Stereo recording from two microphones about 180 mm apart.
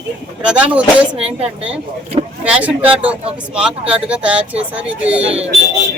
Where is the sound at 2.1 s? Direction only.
35° right (ahead or behind).